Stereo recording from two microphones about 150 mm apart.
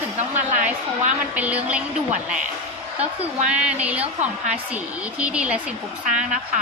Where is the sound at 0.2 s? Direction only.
50° right (ahead or behind).